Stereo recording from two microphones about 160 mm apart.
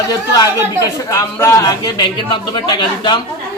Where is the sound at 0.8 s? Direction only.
20° left (ahead or behind).